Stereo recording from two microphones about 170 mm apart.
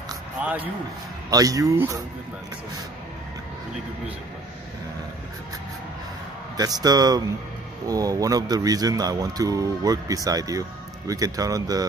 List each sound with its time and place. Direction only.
0.4 s a sound: 5° right (ahead or behind)
1.3 s speech: 20° right (ahead or behind)
6.5 s speech: 20° right (ahead or behind)